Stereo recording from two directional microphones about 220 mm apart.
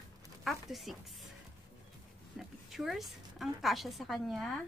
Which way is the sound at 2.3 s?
Centre (ahead or behind).